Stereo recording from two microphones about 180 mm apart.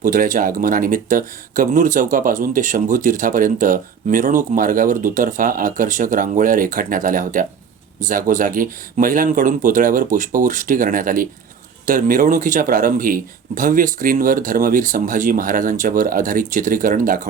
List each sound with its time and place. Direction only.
0.0 s speech: 50° right (ahead or behind)